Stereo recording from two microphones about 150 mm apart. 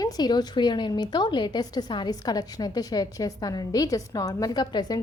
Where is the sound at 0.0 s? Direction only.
25° left (ahead or behind).